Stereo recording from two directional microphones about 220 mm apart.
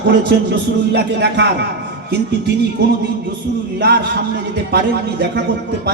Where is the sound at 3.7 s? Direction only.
45° right (ahead or behind).